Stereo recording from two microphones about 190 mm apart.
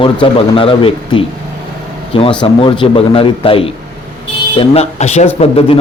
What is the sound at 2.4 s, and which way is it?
Speech, 25° left (ahead or behind).